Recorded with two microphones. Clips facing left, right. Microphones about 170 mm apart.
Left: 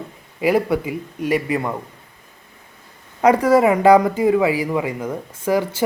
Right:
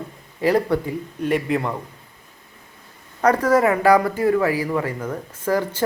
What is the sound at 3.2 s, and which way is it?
Speech, 10° left (ahead or behind).